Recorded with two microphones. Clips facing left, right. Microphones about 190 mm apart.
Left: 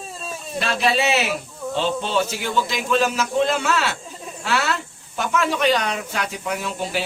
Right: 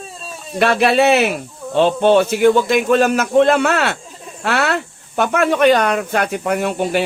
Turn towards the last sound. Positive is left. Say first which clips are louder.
# right 8 dB
turn(degrees=-60)  # may be behind; listen again after turning